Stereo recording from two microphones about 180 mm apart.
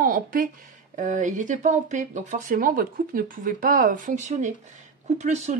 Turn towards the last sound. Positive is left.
turn(degrees=-40)  # may be behind; listen again after turning